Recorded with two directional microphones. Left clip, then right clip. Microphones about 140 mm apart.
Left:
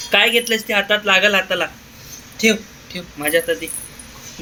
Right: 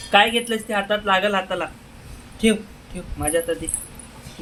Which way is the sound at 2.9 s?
5° right (ahead or behind).